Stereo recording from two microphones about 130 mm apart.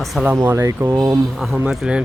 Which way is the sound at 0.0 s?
Centre (ahead or behind).